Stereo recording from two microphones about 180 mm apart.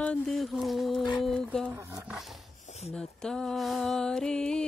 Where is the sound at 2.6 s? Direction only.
40° left (ahead or behind).